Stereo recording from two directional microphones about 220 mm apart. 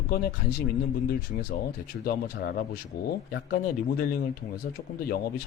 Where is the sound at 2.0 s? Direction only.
45° left (ahead or behind).